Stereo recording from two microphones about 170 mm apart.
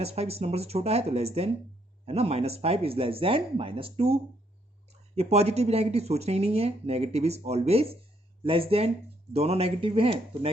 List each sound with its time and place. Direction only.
0.0 s speech: 35° right (ahead or behind)